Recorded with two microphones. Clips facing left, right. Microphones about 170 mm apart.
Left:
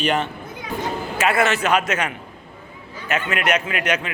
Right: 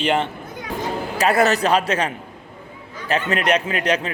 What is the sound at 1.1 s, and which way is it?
A man's voice, 35° right (ahead or behind).